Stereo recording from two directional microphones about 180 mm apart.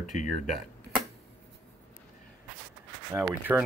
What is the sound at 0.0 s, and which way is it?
Speech, 45° left (ahead or behind).